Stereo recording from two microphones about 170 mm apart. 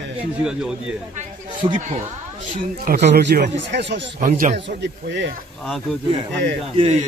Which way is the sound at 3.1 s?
65° right (ahead or behind).